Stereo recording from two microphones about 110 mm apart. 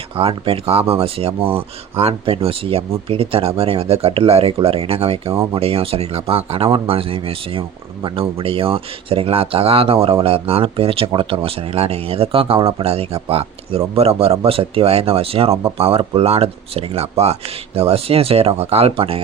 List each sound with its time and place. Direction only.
0.2 s speech: 60° right (ahead or behind)